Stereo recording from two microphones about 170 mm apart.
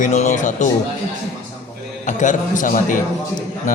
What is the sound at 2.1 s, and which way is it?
Speech, 45° left (ahead or behind).